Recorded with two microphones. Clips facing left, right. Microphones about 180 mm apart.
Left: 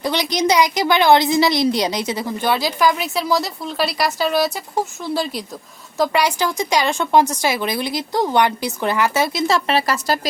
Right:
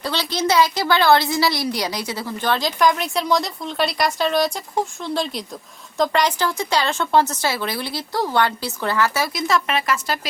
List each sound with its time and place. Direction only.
0.0 s a woman's voice: 15° left (ahead or behind); by 10.2 s 35° left (ahead or behind)